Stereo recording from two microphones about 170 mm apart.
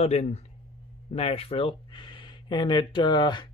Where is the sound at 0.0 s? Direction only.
40° left (ahead or behind).